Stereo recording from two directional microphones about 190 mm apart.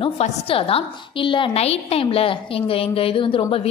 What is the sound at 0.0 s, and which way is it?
A woman's voice, 30° left (ahead or behind).